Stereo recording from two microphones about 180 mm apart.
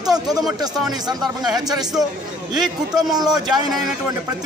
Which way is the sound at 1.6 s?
20° right (ahead or behind).